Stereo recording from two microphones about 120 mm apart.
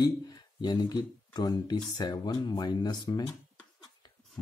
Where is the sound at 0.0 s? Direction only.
35° left (ahead or behind).